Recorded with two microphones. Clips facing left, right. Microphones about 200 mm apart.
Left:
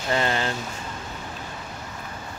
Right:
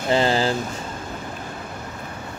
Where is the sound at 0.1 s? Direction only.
30° right (ahead or behind).